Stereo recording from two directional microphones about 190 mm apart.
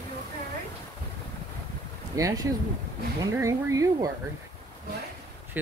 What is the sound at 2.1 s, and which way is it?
Speech, 15° right (ahead or behind).